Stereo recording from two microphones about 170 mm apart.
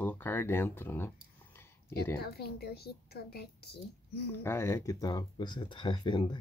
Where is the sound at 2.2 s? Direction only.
70° left (ahead or behind).